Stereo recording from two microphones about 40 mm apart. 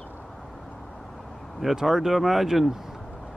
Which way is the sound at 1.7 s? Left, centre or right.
Centre.